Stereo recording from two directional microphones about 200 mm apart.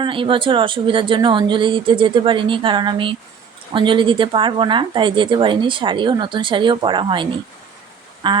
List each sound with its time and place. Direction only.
0.0 s speech: 25° right (ahead or behind)